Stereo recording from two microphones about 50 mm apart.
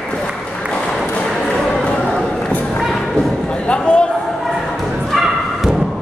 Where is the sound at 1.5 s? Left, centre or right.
Centre.